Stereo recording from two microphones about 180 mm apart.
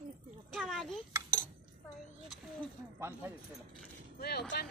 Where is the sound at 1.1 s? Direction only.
15° right (ahead or behind).